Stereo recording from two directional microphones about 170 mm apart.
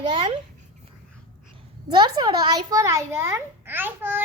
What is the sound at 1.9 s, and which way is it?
A child's voice, 25° right (ahead or behind).